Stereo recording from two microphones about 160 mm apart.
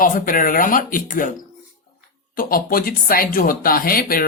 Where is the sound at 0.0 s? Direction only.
60° left (ahead or behind).